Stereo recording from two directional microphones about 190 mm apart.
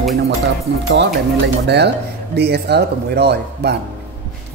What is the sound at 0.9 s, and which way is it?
Speech, 65° right (ahead or behind).